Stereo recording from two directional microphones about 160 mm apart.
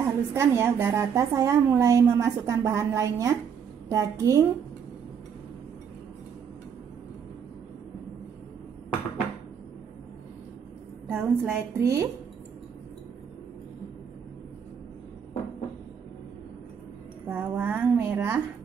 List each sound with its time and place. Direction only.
0.0 s a woman's voice: 15° right (ahead or behind)
11.1 s a woman's voice: 15° right (ahead or behind)
17.3 s a sound: 10° right (ahead or behind)